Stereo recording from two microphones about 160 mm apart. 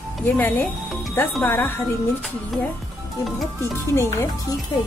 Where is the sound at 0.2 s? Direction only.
10° left (ahead or behind).